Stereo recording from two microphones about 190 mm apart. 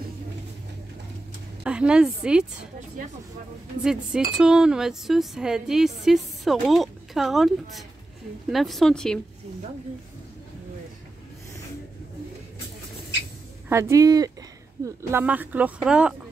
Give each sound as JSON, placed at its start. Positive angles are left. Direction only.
{"t": 1.6, "sound": "a woman's voice", "side_deg": -5}
{"t": 3.8, "sound": "a woman's voice", "side_deg": -5}
{"t": 13.7, "sound": "speech", "side_deg": -15}